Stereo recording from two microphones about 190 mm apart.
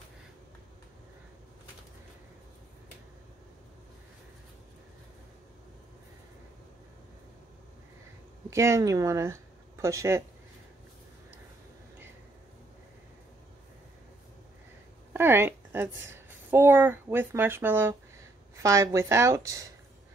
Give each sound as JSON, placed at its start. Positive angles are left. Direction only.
{"t": 8.5, "sound": "speech", "side_deg": -15}
{"t": 15.1, "sound": "a woman's voice", "side_deg": -10}